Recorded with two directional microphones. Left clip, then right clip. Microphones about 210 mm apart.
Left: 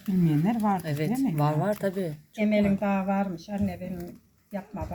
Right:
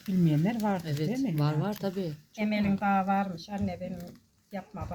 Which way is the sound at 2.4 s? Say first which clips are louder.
Left 5 dB; 50° right (ahead or behind).